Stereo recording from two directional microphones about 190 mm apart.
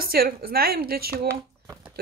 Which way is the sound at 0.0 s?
50° right (ahead or behind).